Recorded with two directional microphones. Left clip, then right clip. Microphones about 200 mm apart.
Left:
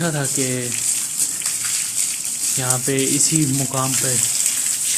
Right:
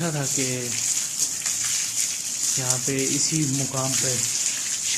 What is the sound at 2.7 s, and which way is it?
Speech, 20° left (ahead or behind).